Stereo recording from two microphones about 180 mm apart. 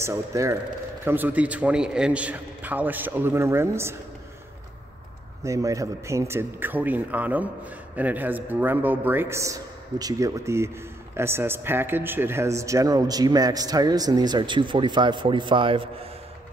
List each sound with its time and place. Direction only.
0.0 s a man's voice: 15° right (ahead or behind)
5.4 s a man's voice: 15° right (ahead or behind)